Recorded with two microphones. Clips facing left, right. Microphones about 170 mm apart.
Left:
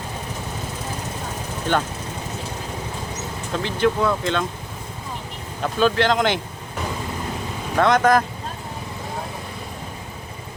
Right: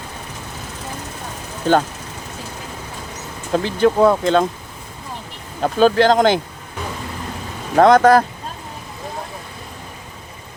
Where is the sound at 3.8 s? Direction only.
40° right (ahead or behind).